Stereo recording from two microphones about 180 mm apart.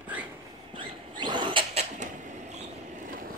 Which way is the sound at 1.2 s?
25° right (ahead or behind).